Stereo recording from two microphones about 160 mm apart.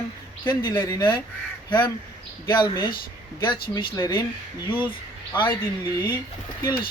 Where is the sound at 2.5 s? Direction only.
30° left (ahead or behind).